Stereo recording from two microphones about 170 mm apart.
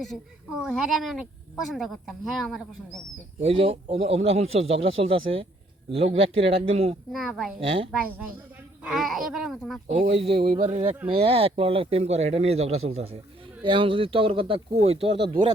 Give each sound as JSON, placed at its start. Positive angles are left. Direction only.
{"t": 0.0, "sound": "speech", "side_deg": 0}
{"t": 3.4, "sound": "speech", "side_deg": -35}
{"t": 7.1, "sound": "speech", "side_deg": 0}
{"t": 7.6, "sound": "speech", "side_deg": -30}
{"t": 8.8, "sound": "speech", "side_deg": 0}
{"t": 9.9, "sound": "speech", "side_deg": -40}